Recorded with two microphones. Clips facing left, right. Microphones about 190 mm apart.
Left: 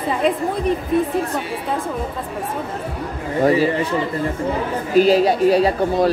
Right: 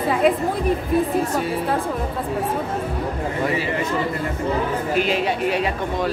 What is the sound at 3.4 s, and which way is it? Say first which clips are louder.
Speech: left 10 dB; 35° left (ahead or behind).